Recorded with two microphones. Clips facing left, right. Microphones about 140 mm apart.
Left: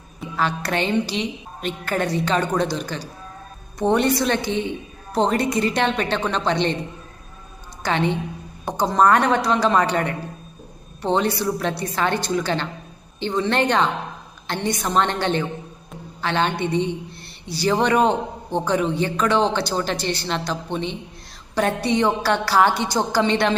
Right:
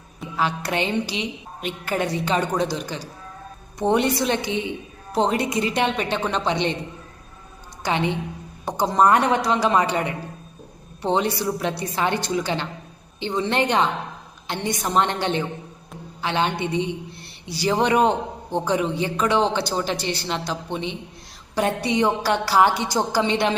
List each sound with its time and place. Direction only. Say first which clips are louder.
0.3 s a woman's voice: left 1 dB; 15° right (ahead or behind)
7.9 s a woman's voice: left 2 dB; 15° right (ahead or behind)